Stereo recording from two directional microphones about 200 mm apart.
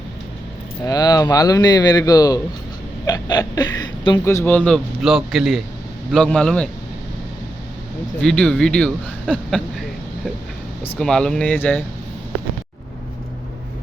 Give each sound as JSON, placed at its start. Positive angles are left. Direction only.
{"t": 0.9, "sound": "speech", "side_deg": 20}
{"t": 8.2, "sound": "speech", "side_deg": 5}
{"t": 10.8, "sound": "speech", "side_deg": 5}